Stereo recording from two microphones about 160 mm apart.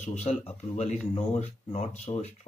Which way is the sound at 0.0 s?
45° left (ahead or behind).